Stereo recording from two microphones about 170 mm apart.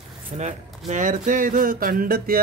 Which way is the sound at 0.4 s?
45° right (ahead or behind).